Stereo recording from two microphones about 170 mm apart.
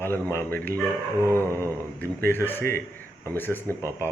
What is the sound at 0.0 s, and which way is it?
Speech, 15° left (ahead or behind).